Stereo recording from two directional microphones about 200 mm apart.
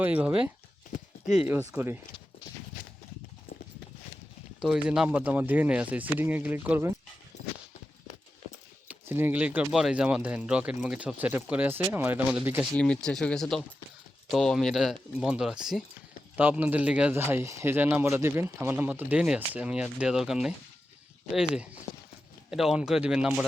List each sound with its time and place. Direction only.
0.0 s speech: 10° right (ahead or behind)
4.6 s speech: 5° right (ahead or behind)
7.3 s a sound: 35° left (ahead or behind)
8.9 s speech: 10° right (ahead or behind)
12.7 s speech: 5° left (ahead or behind)